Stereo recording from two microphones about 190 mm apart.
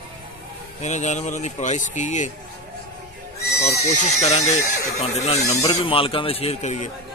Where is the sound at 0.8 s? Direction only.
40° left (ahead or behind).